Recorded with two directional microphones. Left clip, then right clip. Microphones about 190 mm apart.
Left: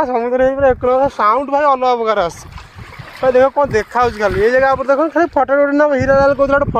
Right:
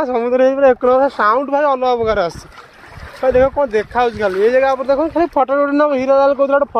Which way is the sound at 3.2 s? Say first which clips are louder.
Left 2 dB; 20° left (ahead or behind).